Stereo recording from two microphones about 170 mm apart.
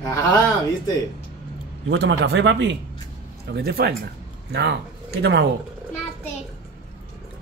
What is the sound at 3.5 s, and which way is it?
Speech, 70° right (ahead or behind).